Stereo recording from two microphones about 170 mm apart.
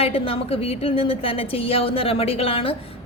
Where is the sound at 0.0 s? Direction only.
35° left (ahead or behind).